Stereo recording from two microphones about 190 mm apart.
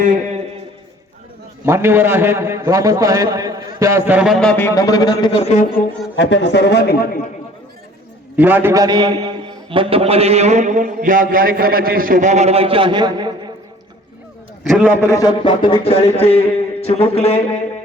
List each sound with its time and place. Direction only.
1.6 s a man's voice: 15° right (ahead or behind); by 5.6 s 35° left (ahead or behind)
6.1 s speech: 65° left (ahead or behind)
8.4 s a man's voice: 10° right (ahead or behind)
14.6 s a man's voice: 5° right (ahead or behind)
15.0 s speech: 20° left (ahead or behind)